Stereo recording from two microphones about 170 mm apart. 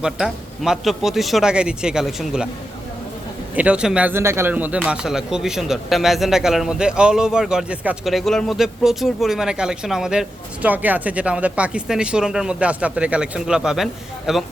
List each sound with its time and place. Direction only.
0.0 s a man's voice: 5° right (ahead or behind)
3.5 s a man's voice: 10° right (ahead or behind)